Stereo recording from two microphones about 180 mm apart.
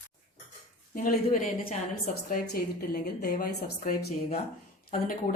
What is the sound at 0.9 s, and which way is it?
Speech, 50° left (ahead or behind).